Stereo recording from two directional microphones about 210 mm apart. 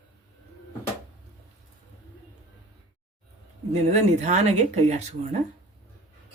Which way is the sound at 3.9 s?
30° right (ahead or behind).